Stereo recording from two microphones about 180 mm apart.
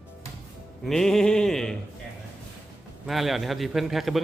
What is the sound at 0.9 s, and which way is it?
Speech, centre (ahead or behind).